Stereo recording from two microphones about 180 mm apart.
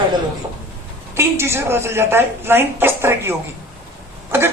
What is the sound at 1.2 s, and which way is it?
A woman's voice, 15° right (ahead or behind).